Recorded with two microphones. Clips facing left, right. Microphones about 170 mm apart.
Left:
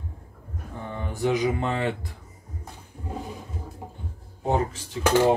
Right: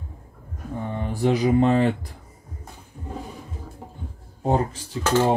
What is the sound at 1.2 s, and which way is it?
Speech, 30° right (ahead or behind).